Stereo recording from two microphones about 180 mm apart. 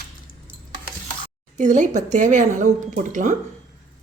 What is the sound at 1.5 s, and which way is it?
Speech, 45° right (ahead or behind).